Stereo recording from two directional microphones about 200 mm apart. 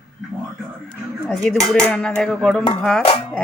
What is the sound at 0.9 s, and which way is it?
Speech, 5° left (ahead or behind).